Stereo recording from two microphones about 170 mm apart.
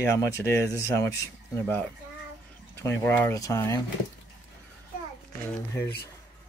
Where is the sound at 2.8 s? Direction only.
15° left (ahead or behind).